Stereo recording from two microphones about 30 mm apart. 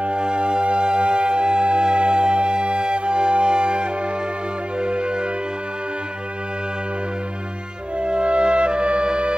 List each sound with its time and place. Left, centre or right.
0.0 s music: right
8.0 s music: right